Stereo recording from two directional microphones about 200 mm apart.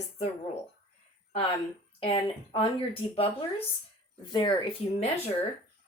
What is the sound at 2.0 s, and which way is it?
Speech, 25° left (ahead or behind).